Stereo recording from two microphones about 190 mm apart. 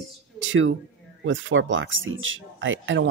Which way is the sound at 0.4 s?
90° right.